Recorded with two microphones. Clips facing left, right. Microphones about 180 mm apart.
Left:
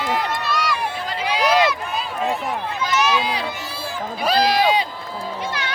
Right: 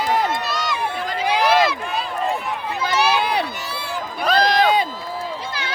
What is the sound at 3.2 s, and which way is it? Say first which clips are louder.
Run: right 2 dB; 65° right (ahead or behind).